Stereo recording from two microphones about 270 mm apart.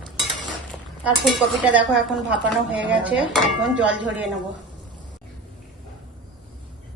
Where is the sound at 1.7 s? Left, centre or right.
Centre.